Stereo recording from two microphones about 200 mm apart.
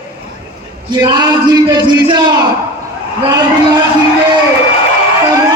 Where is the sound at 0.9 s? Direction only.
20° right (ahead or behind).